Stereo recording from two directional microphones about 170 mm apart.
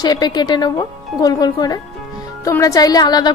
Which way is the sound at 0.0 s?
25° left (ahead or behind).